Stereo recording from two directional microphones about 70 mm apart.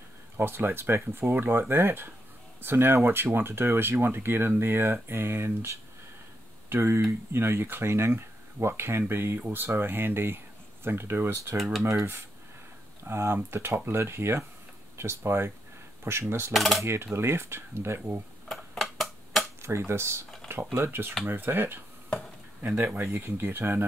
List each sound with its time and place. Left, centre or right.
0.4 s speech: right
6.7 s speech: right
11.5 s speech: centre
11.8 s speech: right
16.5 s speech: centre
16.8 s speech: right
18.5 s a sound: centre
19.6 s speech: right